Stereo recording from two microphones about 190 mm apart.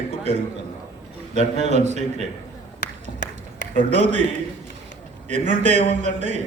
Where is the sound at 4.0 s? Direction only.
35° right (ahead or behind).